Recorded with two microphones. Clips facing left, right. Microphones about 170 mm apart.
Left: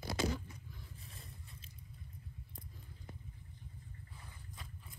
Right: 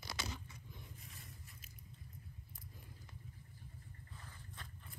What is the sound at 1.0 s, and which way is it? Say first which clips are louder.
Scrape: left 2 dB; 30° left (ahead or behind).